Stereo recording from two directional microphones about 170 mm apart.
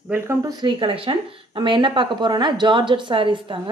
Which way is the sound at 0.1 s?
15° right (ahead or behind).